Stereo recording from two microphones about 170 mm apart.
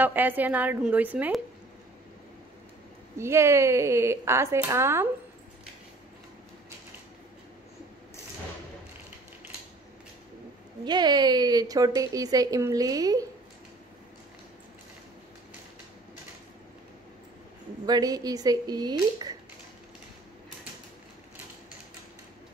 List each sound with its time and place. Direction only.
0.0 s speech: 10° right (ahead or behind)
3.2 s speech: 15° right (ahead or behind)
10.9 s a woman's voice: 25° right (ahead or behind)
17.8 s a woman's voice: 20° right (ahead or behind)